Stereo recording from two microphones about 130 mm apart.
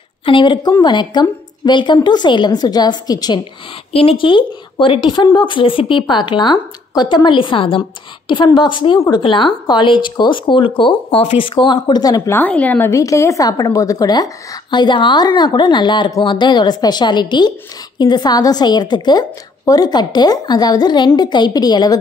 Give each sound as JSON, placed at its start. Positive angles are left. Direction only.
{"t": 0.2, "sound": "a woman's voice", "side_deg": 40}
{"t": 3.9, "sound": "a woman's voice", "side_deg": 45}
{"t": 12.4, "sound": "a woman's voice", "side_deg": 10}